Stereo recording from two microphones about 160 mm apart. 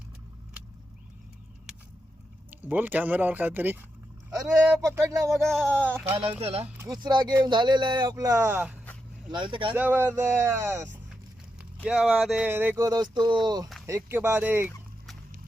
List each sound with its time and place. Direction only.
2.5 s speech: 10° right (ahead or behind)
5.4 s speech: 5° left (ahead or behind)
6.4 s speech: 40° right (ahead or behind)
6.7 s speech: 25° right (ahead or behind)
9.3 s speech: 30° right (ahead or behind)
9.7 s speech: 10° right (ahead or behind)
11.8 s speech: 5° right (ahead or behind)
12.5 s speech: 15° right (ahead or behind)
13.8 s speech: 15° right (ahead or behind)